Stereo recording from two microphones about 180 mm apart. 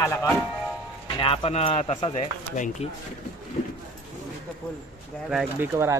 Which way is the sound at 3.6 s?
35° left (ahead or behind).